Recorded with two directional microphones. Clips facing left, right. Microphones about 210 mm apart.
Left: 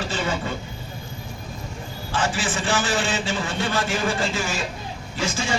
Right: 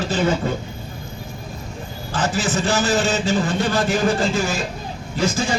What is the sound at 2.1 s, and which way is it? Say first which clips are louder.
A man's voice: right 3 dB; 40° right (ahead or behind).